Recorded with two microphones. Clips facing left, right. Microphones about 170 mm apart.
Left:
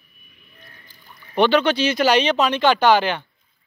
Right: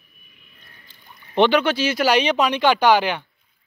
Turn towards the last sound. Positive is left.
turn(degrees=-10)  # may be behind; listen again after turning